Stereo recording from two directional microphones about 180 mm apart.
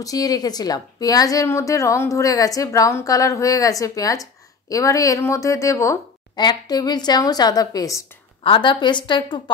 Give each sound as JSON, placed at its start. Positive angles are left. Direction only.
{"t": 0.0, "sound": "a woman's voice", "side_deg": 20}